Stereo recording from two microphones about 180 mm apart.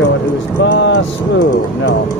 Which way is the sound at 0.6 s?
80° left.